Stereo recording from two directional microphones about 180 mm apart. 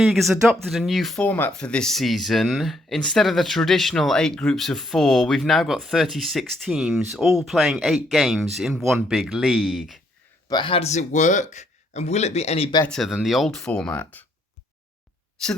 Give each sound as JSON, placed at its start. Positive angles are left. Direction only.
{"t": 0.0, "sound": "speech", "side_deg": 0}
{"t": 10.5, "sound": "speech", "side_deg": 30}
{"t": 12.8, "sound": "speech", "side_deg": 0}
{"t": 15.4, "sound": "speech", "side_deg": 5}